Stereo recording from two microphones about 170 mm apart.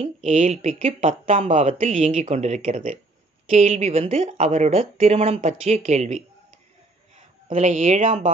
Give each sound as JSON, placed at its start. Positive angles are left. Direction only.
{"t": 0.0, "sound": "speech", "side_deg": -40}
{"t": 7.4, "sound": "speech", "side_deg": -45}